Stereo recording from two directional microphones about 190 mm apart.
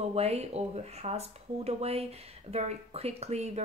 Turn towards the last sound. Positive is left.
turn(degrees=-35)  # may be behind; listen again after turning